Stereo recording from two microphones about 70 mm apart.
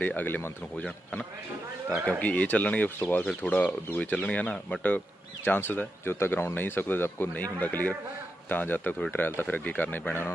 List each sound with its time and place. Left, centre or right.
0.0 s speech: left
2.0 s speech: left